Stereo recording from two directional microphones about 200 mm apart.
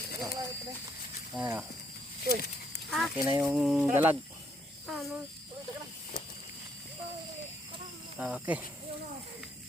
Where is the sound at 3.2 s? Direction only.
15° right (ahead or behind).